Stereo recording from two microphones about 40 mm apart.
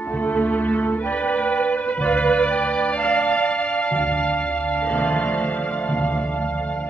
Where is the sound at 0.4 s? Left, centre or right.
Left.